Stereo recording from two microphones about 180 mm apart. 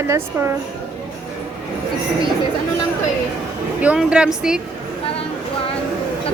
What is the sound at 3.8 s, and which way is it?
Speech, 5° right (ahead or behind).